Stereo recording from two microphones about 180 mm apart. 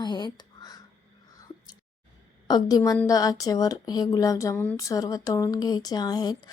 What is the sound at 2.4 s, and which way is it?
Speech, 20° left (ahead or behind).